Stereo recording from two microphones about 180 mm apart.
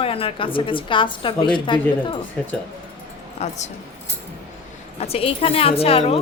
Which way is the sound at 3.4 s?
40° left (ahead or behind).